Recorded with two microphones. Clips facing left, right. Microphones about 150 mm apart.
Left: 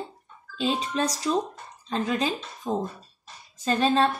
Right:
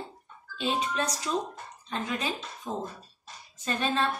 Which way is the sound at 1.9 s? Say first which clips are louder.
Left 6 dB; 35° left (ahead or behind).